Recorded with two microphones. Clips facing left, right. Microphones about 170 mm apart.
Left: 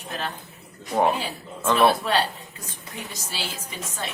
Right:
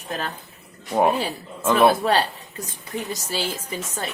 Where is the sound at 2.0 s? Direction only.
40° right (ahead or behind).